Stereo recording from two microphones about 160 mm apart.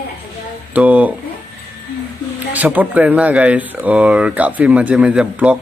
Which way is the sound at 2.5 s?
10° right (ahead or behind).